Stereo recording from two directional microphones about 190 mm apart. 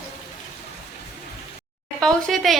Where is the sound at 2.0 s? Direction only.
Centre (ahead or behind).